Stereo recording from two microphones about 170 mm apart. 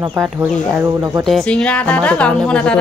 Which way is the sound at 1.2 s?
5° left (ahead or behind).